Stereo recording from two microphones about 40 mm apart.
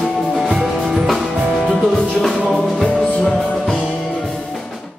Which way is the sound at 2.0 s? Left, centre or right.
Centre.